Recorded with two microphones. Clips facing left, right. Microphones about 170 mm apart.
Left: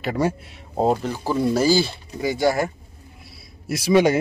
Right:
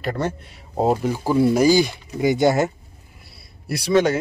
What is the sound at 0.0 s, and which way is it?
Speech, 5° left (ahead or behind).